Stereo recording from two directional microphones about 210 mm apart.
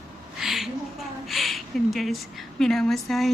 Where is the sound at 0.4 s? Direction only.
Centre (ahead or behind).